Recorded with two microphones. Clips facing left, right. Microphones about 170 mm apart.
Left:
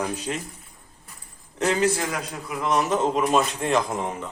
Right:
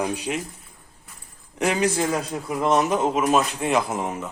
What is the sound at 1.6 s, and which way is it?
A man's voice, 15° right (ahead or behind).